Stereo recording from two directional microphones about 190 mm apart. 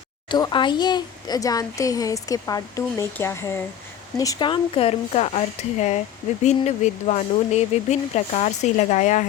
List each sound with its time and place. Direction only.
0.3 s speech: 25° left (ahead or behind); by 9.2 s 40° left (ahead or behind)